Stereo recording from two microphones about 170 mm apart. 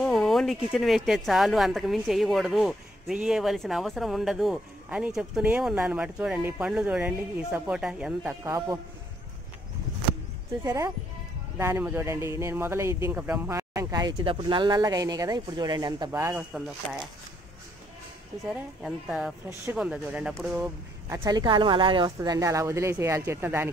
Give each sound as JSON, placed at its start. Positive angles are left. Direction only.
{"t": 0.0, "sound": "speech", "side_deg": 0}
{"t": 10.6, "sound": "speech", "side_deg": -15}
{"t": 16.5, "sound": "speech", "side_deg": -5}
{"t": 18.5, "sound": "speech", "side_deg": 0}